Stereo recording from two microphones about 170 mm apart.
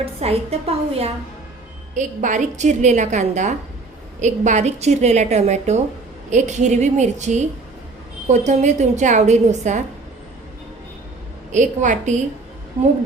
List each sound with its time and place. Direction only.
0.0 s a woman's voice: 35° right (ahead or behind)
2.0 s a woman's voice: 45° right (ahead or behind)
11.5 s a woman's voice: 45° right (ahead or behind)